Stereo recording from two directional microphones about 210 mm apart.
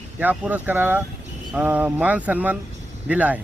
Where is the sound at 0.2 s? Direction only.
5° right (ahead or behind).